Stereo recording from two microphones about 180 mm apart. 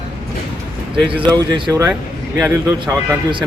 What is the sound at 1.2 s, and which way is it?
Speech, 20° right (ahead or behind).